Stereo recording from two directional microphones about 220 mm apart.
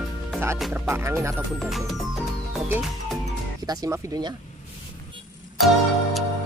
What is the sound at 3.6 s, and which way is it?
Speech, 15° right (ahead or behind).